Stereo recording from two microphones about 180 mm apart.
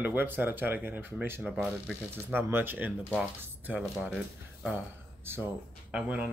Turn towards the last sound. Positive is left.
turn(degrees=-5)  # may be behind; listen again after turning